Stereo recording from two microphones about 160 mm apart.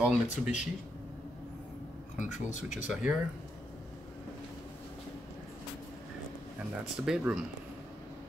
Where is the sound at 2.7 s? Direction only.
5° right (ahead or behind).